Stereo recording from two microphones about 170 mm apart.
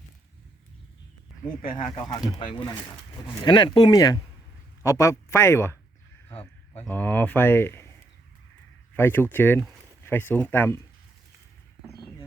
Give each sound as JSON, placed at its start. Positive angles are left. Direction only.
{"t": 1.7, "sound": "speech", "side_deg": 30}
{"t": 6.8, "sound": "speech", "side_deg": 10}
{"t": 9.0, "sound": "speech", "side_deg": 15}